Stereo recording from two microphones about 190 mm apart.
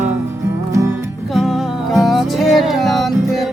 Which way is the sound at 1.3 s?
Centre (ahead or behind).